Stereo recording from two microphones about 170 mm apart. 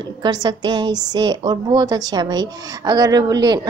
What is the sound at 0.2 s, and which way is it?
A woman's voice, 25° right (ahead or behind).